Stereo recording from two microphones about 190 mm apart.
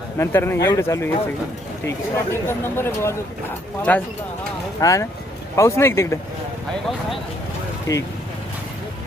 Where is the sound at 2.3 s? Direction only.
10° left (ahead or behind).